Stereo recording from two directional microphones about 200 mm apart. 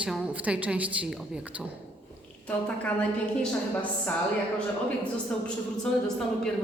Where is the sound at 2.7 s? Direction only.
5° left (ahead or behind).